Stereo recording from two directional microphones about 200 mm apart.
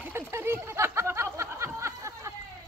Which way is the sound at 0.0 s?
10° right (ahead or behind).